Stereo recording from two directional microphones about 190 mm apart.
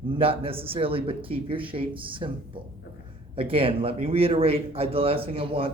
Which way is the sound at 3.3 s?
30° right (ahead or behind).